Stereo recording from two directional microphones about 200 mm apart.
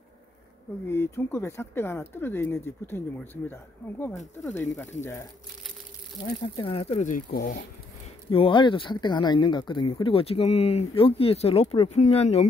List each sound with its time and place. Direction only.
0.8 s speech: 10° left (ahead or behind)
6.4 s speech: 25° left (ahead or behind); by 7.6 s 45° left (ahead or behind)
8.3 s speech: 25° left (ahead or behind)